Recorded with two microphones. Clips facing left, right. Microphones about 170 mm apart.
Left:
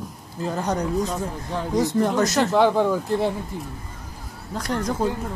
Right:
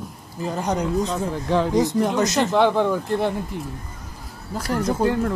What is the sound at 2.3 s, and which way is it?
Speech, centre (ahead or behind).